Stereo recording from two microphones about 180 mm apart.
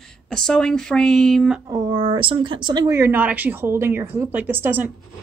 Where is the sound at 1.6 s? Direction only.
20° right (ahead or behind).